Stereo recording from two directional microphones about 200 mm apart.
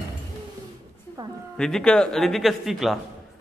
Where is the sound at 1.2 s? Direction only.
20° right (ahead or behind).